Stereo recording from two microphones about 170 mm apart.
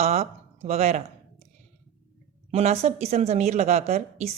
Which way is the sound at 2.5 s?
40° right (ahead or behind).